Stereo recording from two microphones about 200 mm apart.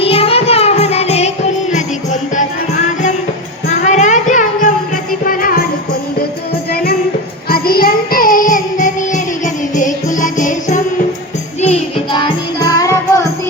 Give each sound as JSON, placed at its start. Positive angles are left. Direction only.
{"t": 0.0, "sound": "music", "side_deg": 30}
{"t": 3.7, "sound": "music", "side_deg": 35}
{"t": 6.7, "sound": "music", "side_deg": 50}
{"t": 7.5, "sound": "child singing", "side_deg": 50}
{"t": 11.6, "sound": "music", "side_deg": 30}